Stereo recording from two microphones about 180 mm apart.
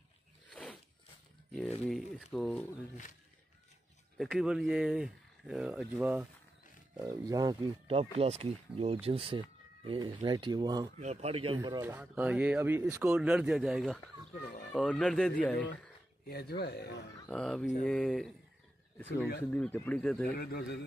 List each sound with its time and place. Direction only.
0.5 s a sound: 5° left (ahead or behind)
1.9 s speech: centre (ahead or behind)
4.2 s speech: centre (ahead or behind)
7.1 s speech: 20° right (ahead or behind)
8.0 s speech: 35° right (ahead or behind)
11.0 s speech: 35° right (ahead or behind)
11.8 s speech: 10° right (ahead or behind); by 15.7 s 5° left (ahead or behind)
16.3 s speech: 60° left (ahead or behind)
17.3 s speech: 5° left (ahead or behind)
19.4 s speech: 5° left (ahead or behind)
20.3 s speech: 60° left (ahead or behind)